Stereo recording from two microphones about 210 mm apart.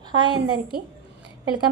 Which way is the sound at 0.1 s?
20° right (ahead or behind).